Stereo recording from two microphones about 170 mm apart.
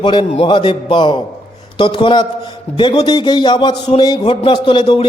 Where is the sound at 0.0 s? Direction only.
25° left (ahead or behind).